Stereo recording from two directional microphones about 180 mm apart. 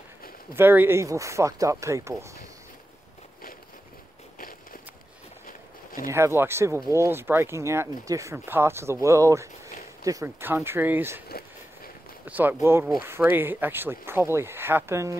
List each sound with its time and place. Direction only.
0.6 s speech: 10° right (ahead or behind)
5.5 s walk: 50° left (ahead or behind)
6.0 s speech: 15° right (ahead or behind)
11.2 s a sound: 60° left (ahead or behind)
12.3 s speech: 10° right (ahead or behind)